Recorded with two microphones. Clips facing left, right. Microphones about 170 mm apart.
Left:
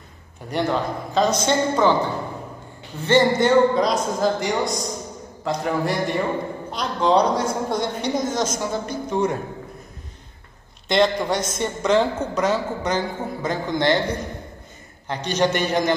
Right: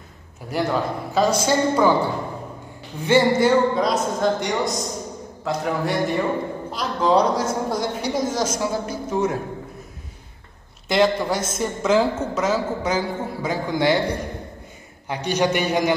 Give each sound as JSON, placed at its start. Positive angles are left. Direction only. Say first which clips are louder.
{"t": 0.5, "sound": "a woman's voice", "louder": "even", "side_deg": -5}
{"t": 3.1, "sound": "a woman's voice", "louder": "even", "side_deg": -5}
{"t": 10.9, "sound": "a woman's voice", "louder": "even", "side_deg": -5}
{"t": 15.0, "sound": "a man's voice", "louder": "even", "side_deg": -10}